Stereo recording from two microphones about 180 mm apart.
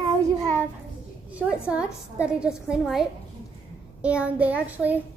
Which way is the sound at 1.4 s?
Centre (ahead or behind).